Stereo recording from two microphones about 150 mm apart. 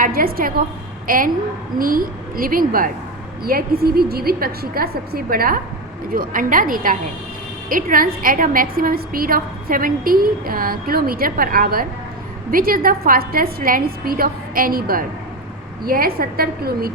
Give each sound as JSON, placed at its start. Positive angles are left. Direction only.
{"t": 0.0, "sound": "a woman's voice", "side_deg": -80}
{"t": 1.0, "sound": "a woman's voice", "side_deg": -65}
{"t": 3.4, "sound": "a woman's voice", "side_deg": -90}